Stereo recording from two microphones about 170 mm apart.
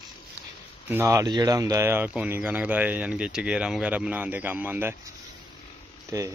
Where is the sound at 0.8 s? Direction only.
15° right (ahead or behind).